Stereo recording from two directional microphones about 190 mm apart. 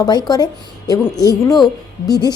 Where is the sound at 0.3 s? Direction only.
20° left (ahead or behind).